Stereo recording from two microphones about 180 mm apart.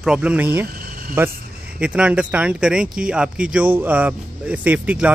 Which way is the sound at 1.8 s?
5° right (ahead or behind).